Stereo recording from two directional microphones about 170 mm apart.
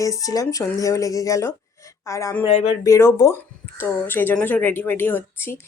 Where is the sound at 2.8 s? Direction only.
15° left (ahead or behind).